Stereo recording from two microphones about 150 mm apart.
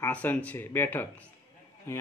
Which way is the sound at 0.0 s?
10° left (ahead or behind).